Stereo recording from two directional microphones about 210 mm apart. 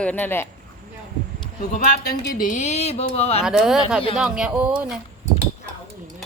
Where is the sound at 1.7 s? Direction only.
40° left (ahead or behind).